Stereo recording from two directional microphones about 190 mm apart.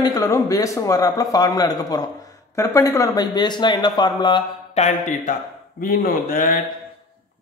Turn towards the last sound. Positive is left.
turn(degrees=45)  # may be behind; listen again after turning